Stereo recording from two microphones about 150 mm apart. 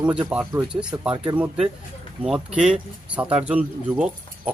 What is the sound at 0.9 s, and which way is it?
Speech, 30° right (ahead or behind).